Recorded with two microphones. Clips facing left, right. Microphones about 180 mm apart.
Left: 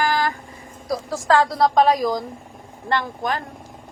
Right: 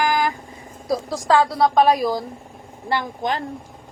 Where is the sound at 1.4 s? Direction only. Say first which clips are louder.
Even; centre (ahead or behind).